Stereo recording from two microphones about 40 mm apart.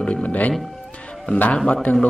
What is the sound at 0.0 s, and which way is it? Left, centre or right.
Speech, left.